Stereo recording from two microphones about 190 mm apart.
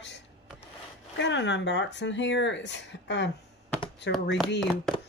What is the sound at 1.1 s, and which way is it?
Speech, 70° left (ahead or behind).